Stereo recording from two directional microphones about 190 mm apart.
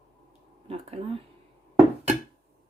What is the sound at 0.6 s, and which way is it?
Speech, 30° right (ahead or behind).